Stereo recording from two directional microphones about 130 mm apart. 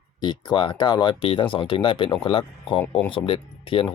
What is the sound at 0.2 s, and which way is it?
Speech, 35° left (ahead or behind).